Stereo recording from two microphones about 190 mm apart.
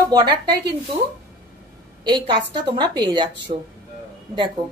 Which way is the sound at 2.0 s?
25° right (ahead or behind).